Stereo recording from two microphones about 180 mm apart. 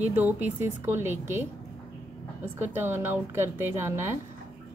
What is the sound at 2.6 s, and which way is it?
A woman's voice, 10° right (ahead or behind).